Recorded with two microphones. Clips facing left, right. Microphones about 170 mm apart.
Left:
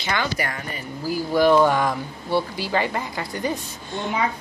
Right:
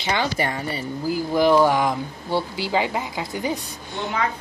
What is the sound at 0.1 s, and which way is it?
Speech, 25° right (ahead or behind).